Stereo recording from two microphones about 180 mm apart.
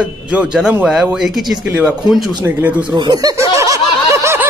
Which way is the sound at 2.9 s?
25° right (ahead or behind).